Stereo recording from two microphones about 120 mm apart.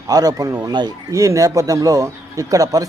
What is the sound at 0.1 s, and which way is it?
A man's voice, 30° right (ahead or behind).